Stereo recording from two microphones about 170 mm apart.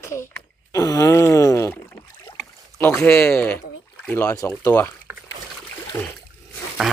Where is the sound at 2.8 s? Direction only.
15° left (ahead or behind).